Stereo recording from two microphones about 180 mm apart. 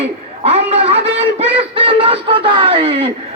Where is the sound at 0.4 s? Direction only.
35° right (ahead or behind).